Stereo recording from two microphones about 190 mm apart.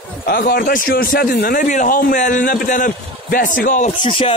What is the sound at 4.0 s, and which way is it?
Speech, 30° left (ahead or behind).